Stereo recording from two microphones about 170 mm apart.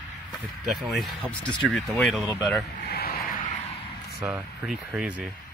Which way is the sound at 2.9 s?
65° left (ahead or behind).